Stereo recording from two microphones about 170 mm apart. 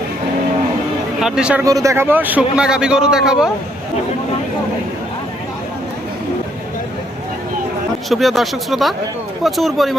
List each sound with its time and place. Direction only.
1.2 s a man's voice: 5° right (ahead or behind)
1.6 s a man's voice: 20° right (ahead or behind); by 3.5 s 5° right (ahead or behind)
8.1 s a man's voice: centre (ahead or behind)